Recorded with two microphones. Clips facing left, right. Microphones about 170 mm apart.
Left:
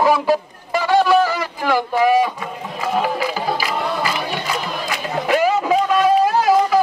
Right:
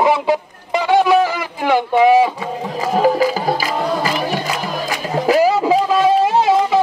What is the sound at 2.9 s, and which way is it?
Music, 40° right (ahead or behind).